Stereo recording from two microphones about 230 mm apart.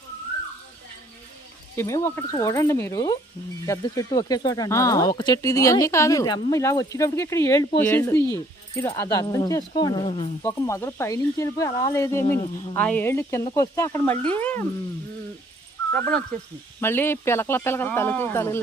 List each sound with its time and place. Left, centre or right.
1.7 s speech: centre
10.4 s speech: centre
15.9 s speech: centre